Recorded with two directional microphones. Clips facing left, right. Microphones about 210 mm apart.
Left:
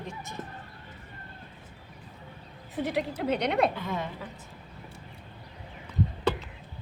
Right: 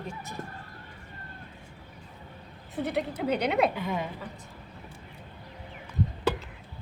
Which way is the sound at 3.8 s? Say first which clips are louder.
Right 2 dB; 15° right (ahead or behind).